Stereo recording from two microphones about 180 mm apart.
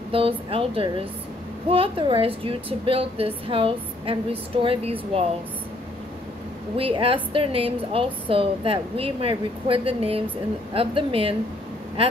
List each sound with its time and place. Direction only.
0.1 s speech: 30° right (ahead or behind)
6.8 s speech: 30° right (ahead or behind)